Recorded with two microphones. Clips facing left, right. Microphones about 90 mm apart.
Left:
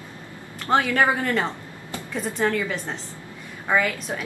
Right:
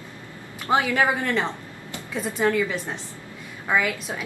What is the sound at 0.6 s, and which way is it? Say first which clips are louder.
Speech: left 1 dB; 10° right (ahead or behind).